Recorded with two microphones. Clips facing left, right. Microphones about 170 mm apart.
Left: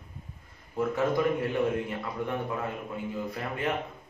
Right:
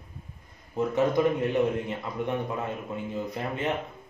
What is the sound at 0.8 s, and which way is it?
A man's voice, 20° right (ahead or behind).